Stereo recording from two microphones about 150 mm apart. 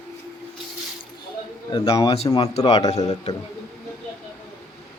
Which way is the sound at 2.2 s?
25° left (ahead or behind).